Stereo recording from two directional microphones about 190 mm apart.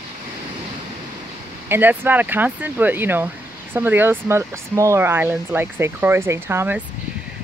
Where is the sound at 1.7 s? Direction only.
10° right (ahead or behind).